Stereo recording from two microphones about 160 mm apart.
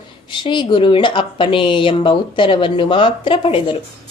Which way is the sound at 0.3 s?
30° left (ahead or behind).